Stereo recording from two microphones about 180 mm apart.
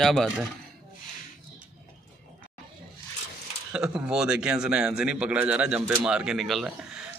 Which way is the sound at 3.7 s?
5° right (ahead or behind).